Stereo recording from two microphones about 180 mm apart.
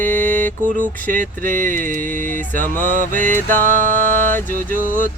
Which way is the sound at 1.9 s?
50° right (ahead or behind).